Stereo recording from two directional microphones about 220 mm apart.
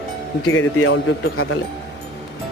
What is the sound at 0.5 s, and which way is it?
Speech, 60° left (ahead or behind).